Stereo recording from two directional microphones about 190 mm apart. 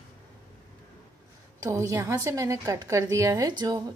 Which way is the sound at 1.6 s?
15° right (ahead or behind).